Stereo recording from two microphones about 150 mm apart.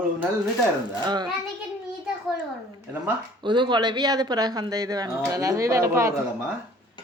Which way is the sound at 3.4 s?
30° right (ahead or behind).